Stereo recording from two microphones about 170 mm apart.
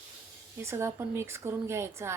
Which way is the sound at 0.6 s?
15° right (ahead or behind).